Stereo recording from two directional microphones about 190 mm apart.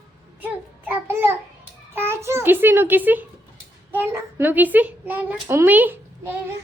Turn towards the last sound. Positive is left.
turn(degrees=-10)  # may be behind; listen again after turning